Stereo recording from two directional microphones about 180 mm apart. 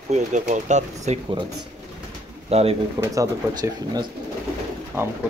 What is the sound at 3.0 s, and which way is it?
Speech, 20° right (ahead or behind).